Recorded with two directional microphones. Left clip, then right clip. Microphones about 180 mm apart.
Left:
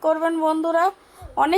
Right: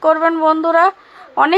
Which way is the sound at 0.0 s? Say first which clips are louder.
Right 7 dB; 20° right (ahead or behind).